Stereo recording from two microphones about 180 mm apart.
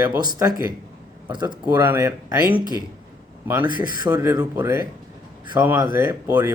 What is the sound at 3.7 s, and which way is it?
Speech, 50° left (ahead or behind).